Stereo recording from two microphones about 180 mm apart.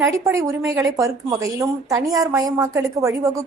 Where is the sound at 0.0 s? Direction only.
15° right (ahead or behind).